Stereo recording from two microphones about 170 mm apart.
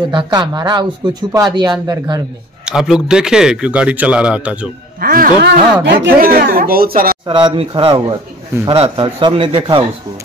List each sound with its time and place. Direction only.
0.1 s speech: 25° right (ahead or behind)
2.6 s a man's voice: centre (ahead or behind)
5.0 s speech: 55° right (ahead or behind); by 6.0 s 75° right (ahead or behind)
6.1 s speech: 55° right (ahead or behind)
7.2 s speech: 30° right (ahead or behind)